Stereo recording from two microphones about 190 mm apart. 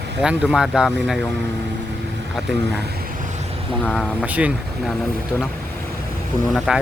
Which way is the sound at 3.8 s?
Centre (ahead or behind).